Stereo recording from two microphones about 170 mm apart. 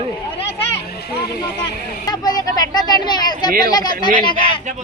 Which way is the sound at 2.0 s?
25° left (ahead or behind).